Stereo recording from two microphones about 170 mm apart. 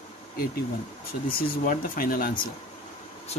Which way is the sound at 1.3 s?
55° left (ahead or behind).